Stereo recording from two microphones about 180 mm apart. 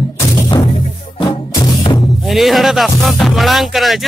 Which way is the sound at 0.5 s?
25° left (ahead or behind).